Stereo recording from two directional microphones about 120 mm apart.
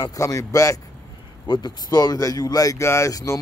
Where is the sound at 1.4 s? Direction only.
35° left (ahead or behind).